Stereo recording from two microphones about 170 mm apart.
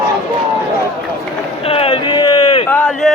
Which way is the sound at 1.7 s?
35° left (ahead or behind).